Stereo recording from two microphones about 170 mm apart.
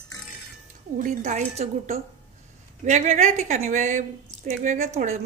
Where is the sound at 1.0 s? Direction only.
45° right (ahead or behind).